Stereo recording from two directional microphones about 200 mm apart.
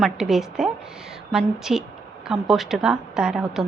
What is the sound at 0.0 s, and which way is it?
A woman's voice, centre (ahead or behind).